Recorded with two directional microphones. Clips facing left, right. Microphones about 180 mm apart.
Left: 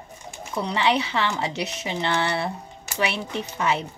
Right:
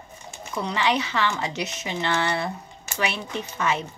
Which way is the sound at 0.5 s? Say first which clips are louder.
Left 2 dB; 30° left (ahead or behind).